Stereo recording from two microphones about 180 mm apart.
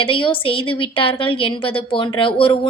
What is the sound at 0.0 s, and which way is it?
Speech, 30° left (ahead or behind).